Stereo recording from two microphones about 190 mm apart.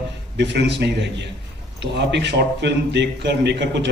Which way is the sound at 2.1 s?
65° right (ahead or behind).